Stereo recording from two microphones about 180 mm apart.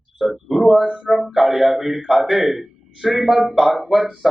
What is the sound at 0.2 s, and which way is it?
Speech, centre (ahead or behind).